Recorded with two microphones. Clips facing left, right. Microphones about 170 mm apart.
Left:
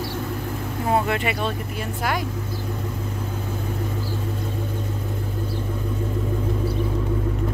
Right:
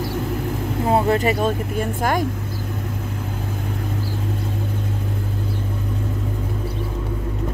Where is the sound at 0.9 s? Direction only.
35° right (ahead or behind).